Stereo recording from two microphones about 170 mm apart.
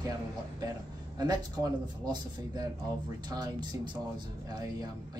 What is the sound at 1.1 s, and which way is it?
A man's voice, 25° right (ahead or behind).